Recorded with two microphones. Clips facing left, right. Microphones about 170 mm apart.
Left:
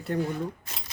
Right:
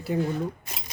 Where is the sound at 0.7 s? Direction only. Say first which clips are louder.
Right 2 dB; 15° right (ahead or behind).